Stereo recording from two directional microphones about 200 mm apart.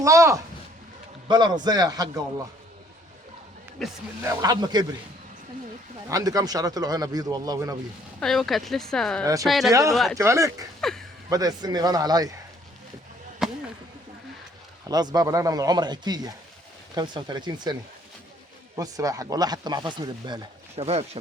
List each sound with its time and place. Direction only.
0.0 s speech: 15° right (ahead or behind)
3.8 s speech: centre (ahead or behind)
4.2 s speech: 20° right (ahead or behind)
6.1 s speech: 20° right (ahead or behind)
8.2 s speech: centre (ahead or behind)
9.2 s speech: 15° right (ahead or behind)
9.5 s speech: centre (ahead or behind)
10.2 s speech: 15° right (ahead or behind)
10.8 s speech: centre (ahead or behind)
11.3 s speech: 20° right (ahead or behind)
13.4 s chop: centre (ahead or behind)
14.8 s speech: 20° right (ahead or behind)
18.8 s speech: 15° right (ahead or behind)